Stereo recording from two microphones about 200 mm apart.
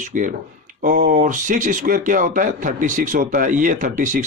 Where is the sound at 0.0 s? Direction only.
40° right (ahead or behind).